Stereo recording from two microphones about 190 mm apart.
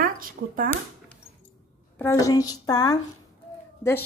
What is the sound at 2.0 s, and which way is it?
A woman's voice, 15° left (ahead or behind).